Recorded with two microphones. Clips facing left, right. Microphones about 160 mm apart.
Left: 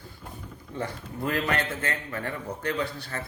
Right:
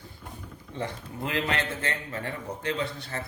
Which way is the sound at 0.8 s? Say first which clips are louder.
Left 1 dB; 20° right (ahead or behind).